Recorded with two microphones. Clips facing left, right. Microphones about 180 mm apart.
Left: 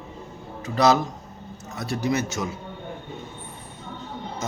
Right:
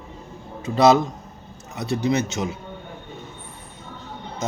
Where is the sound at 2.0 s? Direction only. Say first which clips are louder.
Right 2 dB; 20° right (ahead or behind).